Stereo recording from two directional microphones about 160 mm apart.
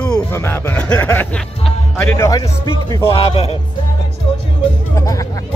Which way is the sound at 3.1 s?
35° left (ahead or behind).